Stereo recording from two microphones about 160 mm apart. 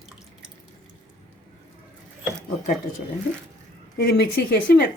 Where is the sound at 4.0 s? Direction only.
75° left (ahead or behind).